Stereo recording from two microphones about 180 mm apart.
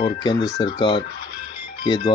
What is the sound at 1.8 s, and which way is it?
Speech, 25° left (ahead or behind).